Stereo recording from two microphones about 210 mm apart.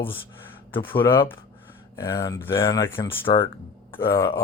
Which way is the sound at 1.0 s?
20° left (ahead or behind).